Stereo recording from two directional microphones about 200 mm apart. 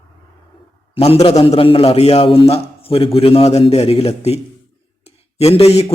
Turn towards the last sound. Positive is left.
turn(degrees=30)  # may be behind; listen again after turning